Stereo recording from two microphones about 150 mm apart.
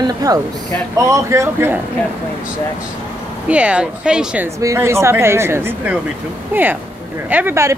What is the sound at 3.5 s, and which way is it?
Speech, 10° right (ahead or behind).